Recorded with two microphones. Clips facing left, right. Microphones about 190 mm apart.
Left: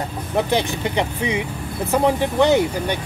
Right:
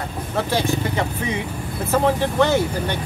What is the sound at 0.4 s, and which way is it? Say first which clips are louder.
Speech: left 1 dB; 20° left (ahead or behind).